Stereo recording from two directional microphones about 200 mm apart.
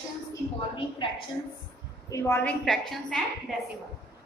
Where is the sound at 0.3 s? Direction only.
25° left (ahead or behind).